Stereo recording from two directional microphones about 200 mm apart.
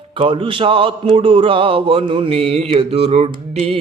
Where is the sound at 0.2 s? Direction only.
25° right (ahead or behind).